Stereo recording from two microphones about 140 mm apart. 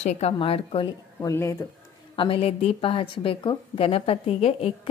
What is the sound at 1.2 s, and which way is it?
Speech, 20° left (ahead or behind).